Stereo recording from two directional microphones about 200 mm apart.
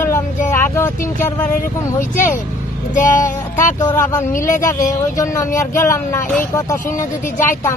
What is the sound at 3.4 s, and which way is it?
Speech, 15° left (ahead or behind).